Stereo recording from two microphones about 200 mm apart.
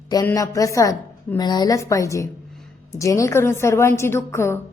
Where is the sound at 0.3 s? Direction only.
15° left (ahead or behind).